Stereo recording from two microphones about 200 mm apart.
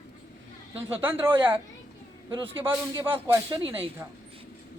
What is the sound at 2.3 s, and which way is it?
Speech, 25° right (ahead or behind).